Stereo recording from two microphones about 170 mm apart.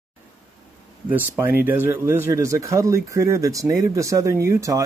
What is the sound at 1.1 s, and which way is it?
Speech, 10° right (ahead or behind).